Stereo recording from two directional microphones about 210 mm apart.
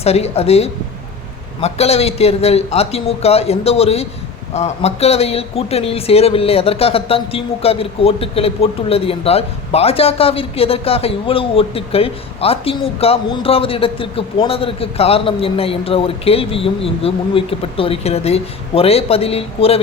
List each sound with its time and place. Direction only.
0.0 s speech: 30° left (ahead or behind)